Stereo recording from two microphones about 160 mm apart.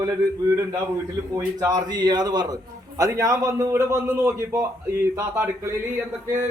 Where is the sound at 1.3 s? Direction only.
20° right (ahead or behind).